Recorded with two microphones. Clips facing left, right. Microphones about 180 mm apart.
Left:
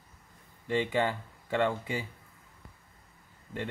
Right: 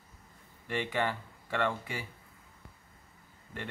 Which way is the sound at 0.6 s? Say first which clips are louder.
Left 4 dB; 15° left (ahead or behind).